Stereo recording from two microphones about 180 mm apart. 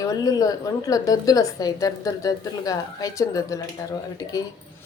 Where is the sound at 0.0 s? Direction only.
20° left (ahead or behind).